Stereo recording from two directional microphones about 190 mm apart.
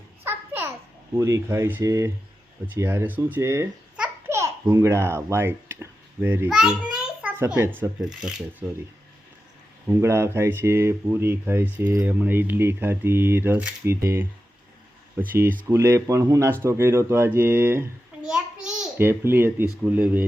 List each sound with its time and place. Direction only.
0.3 s babbling: 10° right (ahead or behind)
1.1 s speech: 15° right (ahead or behind)
3.9 s babbling: 5° right (ahead or behind)
4.4 s a child's voice: 15° right (ahead or behind)
9.9 s speech: 15° right (ahead or behind)